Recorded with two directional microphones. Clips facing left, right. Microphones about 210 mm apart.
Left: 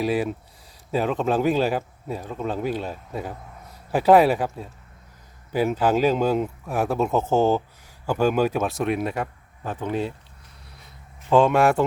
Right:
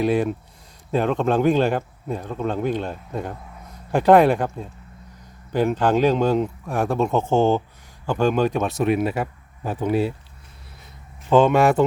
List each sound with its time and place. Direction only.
0.0 s speech: centre (ahead or behind)
11.3 s speech: centre (ahead or behind)